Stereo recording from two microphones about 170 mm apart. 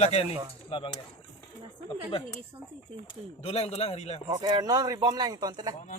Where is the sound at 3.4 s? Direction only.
35° left (ahead or behind).